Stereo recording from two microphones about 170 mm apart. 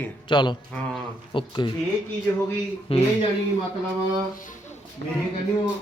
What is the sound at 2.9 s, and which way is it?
Speech, 35° left (ahead or behind).